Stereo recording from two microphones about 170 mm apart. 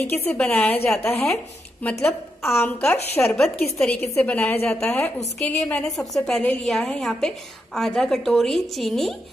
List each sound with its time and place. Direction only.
0.1 s a woman's voice: 10° left (ahead or behind)
3.3 s a woman's voice: centre (ahead or behind)